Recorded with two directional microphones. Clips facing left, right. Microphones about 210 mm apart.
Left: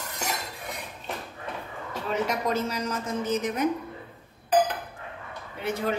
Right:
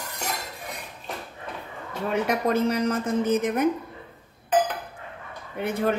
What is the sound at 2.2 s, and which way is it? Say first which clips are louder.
A woman's voice: right 5 dB; 55° right (ahead or behind).